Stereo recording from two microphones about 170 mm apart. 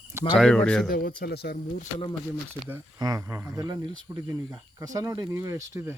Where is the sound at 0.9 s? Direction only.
55° left (ahead or behind).